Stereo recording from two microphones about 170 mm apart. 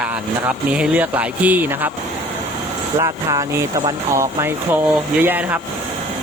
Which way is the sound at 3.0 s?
20° right (ahead or behind).